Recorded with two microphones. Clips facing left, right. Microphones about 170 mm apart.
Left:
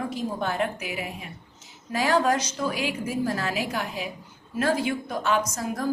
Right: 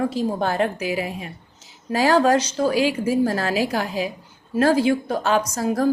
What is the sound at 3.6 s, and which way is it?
Speech, 35° right (ahead or behind).